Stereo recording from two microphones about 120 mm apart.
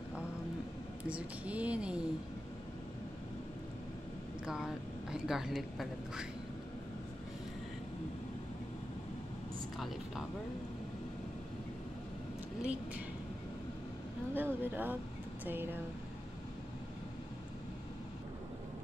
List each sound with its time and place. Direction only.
1.0 s speech: 10° right (ahead or behind)
4.5 s a woman's voice: 5° right (ahead or behind)
14.3 s speech: 15° right (ahead or behind)